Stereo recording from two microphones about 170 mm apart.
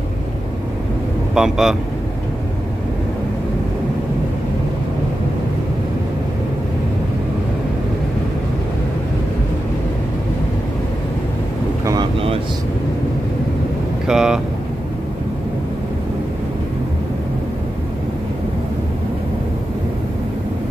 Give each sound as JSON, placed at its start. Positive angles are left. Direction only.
{"t": 1.3, "sound": "speech", "side_deg": -5}
{"t": 11.8, "sound": "boat", "side_deg": -25}
{"t": 14.0, "sound": "speech", "side_deg": -5}